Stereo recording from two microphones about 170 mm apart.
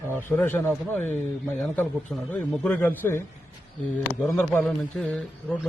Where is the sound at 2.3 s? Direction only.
10° left (ahead or behind).